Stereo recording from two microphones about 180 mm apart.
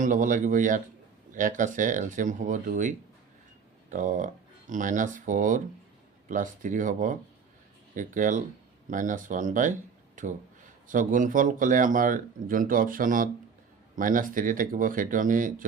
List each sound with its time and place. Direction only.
0.0 s speech: 45° right (ahead or behind)
3.9 s speech: 45° right (ahead or behind)